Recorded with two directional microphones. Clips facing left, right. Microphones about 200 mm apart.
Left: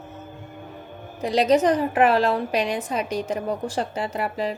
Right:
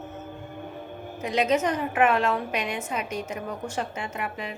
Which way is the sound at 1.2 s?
35° left (ahead or behind).